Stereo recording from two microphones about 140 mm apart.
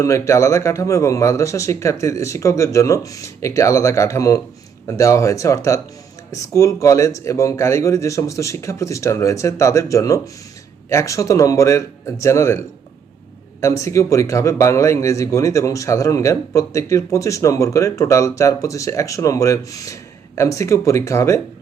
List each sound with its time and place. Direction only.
0.0 s speech: 20° left (ahead or behind)